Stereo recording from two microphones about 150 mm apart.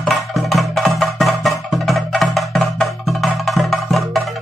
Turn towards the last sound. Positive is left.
turn(degrees=0)  # may be behind; listen again after turning